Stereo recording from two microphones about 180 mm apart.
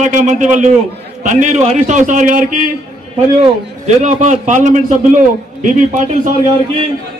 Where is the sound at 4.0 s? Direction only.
40° right (ahead or behind).